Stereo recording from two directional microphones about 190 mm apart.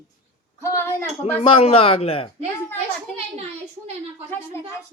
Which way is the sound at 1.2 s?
30° left (ahead or behind).